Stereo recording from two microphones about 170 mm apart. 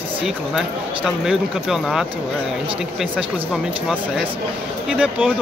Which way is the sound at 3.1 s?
Centre (ahead or behind).